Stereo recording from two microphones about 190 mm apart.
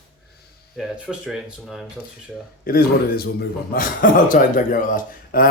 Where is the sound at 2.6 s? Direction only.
50° left (ahead or behind).